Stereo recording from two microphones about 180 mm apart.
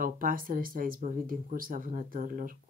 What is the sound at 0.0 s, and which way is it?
Speech, 50° right (ahead or behind).